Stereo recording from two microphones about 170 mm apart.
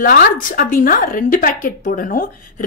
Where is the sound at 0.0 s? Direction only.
60° left (ahead or behind).